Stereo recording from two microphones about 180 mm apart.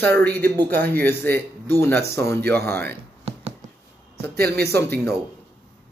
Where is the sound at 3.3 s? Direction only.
35° right (ahead or behind).